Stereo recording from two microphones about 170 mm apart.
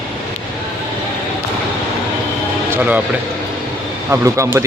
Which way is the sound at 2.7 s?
10° right (ahead or behind).